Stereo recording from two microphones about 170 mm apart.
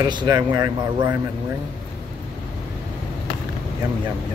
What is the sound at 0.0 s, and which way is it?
Speech, 25° right (ahead or behind).